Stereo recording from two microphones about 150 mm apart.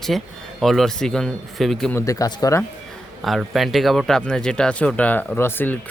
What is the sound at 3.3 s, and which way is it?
Speech, centre (ahead or behind).